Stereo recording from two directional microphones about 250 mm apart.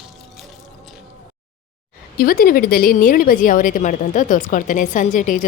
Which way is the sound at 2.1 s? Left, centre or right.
Left.